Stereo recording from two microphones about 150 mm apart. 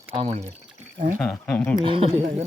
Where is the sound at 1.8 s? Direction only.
35° right (ahead or behind).